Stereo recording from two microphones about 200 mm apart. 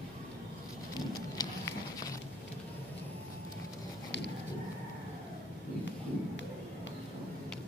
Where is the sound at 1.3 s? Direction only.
20° left (ahead or behind).